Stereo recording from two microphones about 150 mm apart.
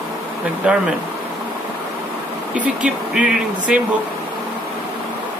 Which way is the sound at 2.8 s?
5° right (ahead or behind).